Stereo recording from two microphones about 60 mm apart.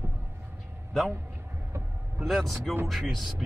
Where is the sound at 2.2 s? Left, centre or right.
Centre.